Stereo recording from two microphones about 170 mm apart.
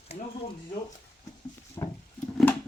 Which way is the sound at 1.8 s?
20° left (ahead or behind).